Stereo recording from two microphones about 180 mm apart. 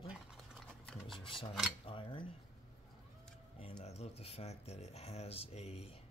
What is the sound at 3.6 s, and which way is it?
Speech, 30° left (ahead or behind).